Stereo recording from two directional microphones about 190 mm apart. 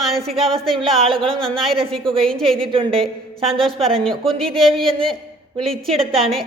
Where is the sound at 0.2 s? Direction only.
30° right (ahead or behind).